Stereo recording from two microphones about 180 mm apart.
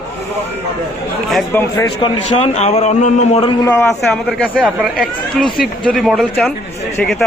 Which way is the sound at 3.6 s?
15° left (ahead or behind).